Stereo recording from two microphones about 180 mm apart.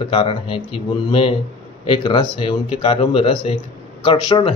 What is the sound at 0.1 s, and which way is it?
A man's voice, 30° left (ahead or behind).